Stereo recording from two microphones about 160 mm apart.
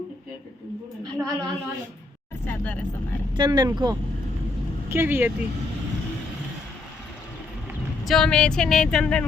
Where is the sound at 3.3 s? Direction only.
25° right (ahead or behind).